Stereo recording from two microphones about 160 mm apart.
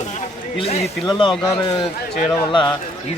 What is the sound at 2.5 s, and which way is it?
Speech, 30° left (ahead or behind).